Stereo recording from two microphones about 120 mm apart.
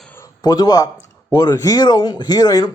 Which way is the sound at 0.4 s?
35° left (ahead or behind).